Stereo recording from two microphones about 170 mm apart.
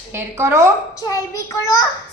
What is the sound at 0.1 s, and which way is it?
Speech, 15° right (ahead or behind).